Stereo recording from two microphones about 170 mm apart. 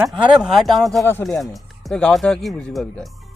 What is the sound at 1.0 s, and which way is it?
Speech, 15° left (ahead or behind).